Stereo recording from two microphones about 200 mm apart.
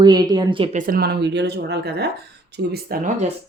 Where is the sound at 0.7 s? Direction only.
45° right (ahead or behind).